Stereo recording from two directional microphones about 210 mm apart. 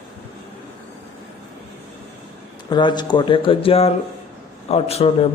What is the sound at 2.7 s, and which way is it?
Speech, 20° left (ahead or behind).